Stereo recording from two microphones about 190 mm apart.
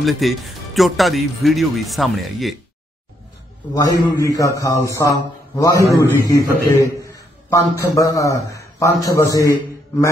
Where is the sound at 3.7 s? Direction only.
20° left (ahead or behind).